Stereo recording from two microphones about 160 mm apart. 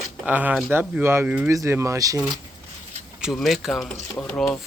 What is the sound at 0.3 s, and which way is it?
Speech, 10° right (ahead or behind).